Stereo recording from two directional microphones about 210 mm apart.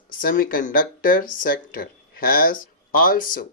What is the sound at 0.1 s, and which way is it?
Speech, 40° left (ahead or behind).